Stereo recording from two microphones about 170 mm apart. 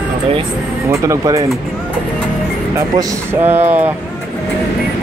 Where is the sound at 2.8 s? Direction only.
15° right (ahead or behind).